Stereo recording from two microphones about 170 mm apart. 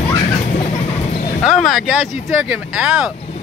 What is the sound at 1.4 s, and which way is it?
Speech, centre (ahead or behind).